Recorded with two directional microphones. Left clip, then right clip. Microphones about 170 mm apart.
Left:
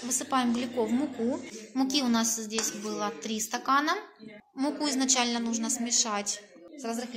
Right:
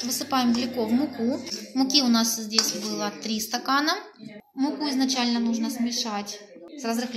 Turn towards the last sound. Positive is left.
turn(degrees=10)  # may be behind; listen again after turning